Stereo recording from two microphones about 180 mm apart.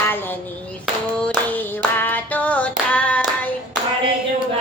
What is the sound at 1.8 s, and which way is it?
Female singing, 10° left (ahead or behind).